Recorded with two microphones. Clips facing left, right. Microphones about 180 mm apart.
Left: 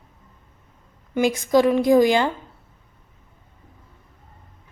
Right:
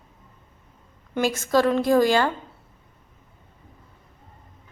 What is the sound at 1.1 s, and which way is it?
A woman's voice, 15° left (ahead or behind).